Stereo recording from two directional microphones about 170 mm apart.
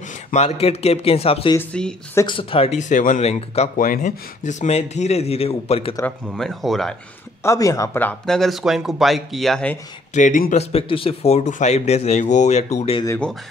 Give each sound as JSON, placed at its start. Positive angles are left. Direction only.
{"t": 0.3, "sound": "speech", "side_deg": 40}
{"t": 1.7, "sound": "speech", "side_deg": 5}
{"t": 2.2, "sound": "speech", "side_deg": 30}
{"t": 3.7, "sound": "speech", "side_deg": 55}
{"t": 6.2, "sound": "speech", "side_deg": 0}
{"t": 7.4, "sound": "speech", "side_deg": 20}
{"t": 10.1, "sound": "speech", "side_deg": 50}